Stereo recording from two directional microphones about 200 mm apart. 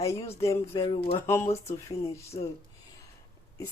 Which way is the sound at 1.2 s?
10° left (ahead or behind).